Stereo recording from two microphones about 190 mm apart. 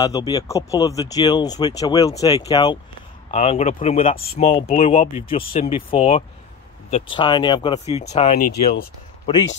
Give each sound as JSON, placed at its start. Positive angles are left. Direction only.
{"t": 0.0, "sound": "speech", "side_deg": 20}
{"t": 3.3, "sound": "speech", "side_deg": 35}
{"t": 7.8, "sound": "speech", "side_deg": 35}